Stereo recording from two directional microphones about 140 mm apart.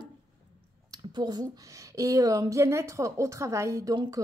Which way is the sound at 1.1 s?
30° right (ahead or behind).